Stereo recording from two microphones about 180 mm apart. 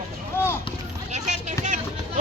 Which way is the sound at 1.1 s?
45° right (ahead or behind).